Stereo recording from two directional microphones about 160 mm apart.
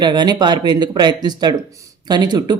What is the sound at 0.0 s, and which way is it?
Speech, 25° right (ahead or behind).